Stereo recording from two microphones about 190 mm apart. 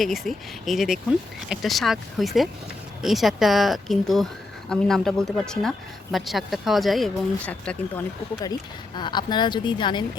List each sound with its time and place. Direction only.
0.0 s speech: centre (ahead or behind)
9.0 s a woman's voice: 25° left (ahead or behind)